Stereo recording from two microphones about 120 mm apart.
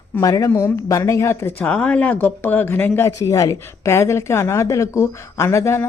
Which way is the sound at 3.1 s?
30° left (ahead or behind).